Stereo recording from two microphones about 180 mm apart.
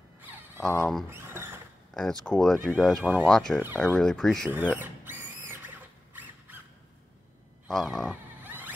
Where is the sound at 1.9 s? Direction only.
5° left (ahead or behind).